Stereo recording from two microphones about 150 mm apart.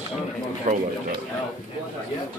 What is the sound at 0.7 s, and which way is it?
Speech, 55° right (ahead or behind).